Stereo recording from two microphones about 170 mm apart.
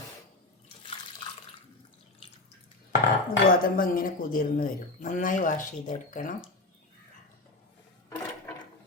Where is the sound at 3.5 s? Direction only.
55° left (ahead or behind).